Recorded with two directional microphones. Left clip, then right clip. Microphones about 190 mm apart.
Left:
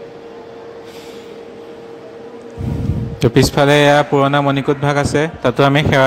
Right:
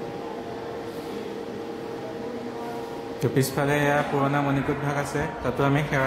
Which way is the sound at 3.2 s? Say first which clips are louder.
Left 12 dB; 50° left (ahead or behind).